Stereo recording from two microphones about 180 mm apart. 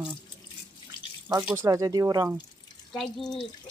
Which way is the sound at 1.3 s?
20° right (ahead or behind).